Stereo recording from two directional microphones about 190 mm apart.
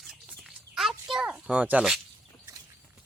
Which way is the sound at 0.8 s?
Centre (ahead or behind).